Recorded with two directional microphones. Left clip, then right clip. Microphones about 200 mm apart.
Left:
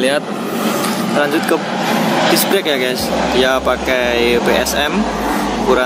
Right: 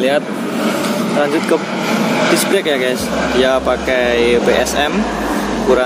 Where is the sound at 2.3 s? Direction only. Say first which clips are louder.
Even; centre (ahead or behind).